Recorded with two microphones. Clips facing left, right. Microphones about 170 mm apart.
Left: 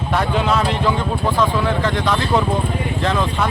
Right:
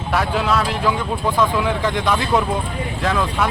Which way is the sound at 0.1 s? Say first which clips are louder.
Left 1 dB; 5° right (ahead or behind).